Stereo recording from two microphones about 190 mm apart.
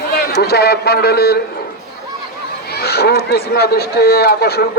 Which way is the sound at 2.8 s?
60° left (ahead or behind).